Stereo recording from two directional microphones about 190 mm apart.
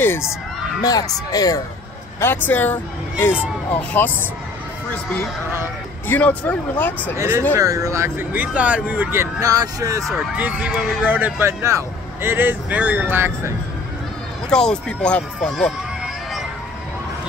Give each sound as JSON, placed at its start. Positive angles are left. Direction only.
{"t": 0.8, "sound": "speech", "side_deg": 20}
{"t": 6.0, "sound": "speech", "side_deg": 10}
{"t": 7.2, "sound": "speech", "side_deg": -15}
{"t": 10.0, "sound": "speech", "side_deg": -5}
{"t": 14.5, "sound": "speech", "side_deg": 5}